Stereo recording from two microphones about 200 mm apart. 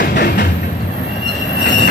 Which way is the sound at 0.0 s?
50° left (ahead or behind).